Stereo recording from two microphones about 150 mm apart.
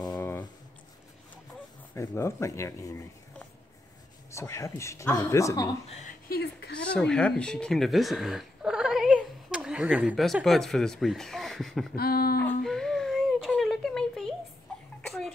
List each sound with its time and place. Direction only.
2.0 s speech: 20° left (ahead or behind)
4.3 s speech: 20° left (ahead or behind)
6.2 s a woman's voice: 90° left
6.9 s speech: 5° left (ahead or behind)
10.2 s speech: centre (ahead or behind)
11.9 s a sound: 90° left
12.4 s a sound: 5° left (ahead or behind)
15.0 s cough: centre (ahead or behind)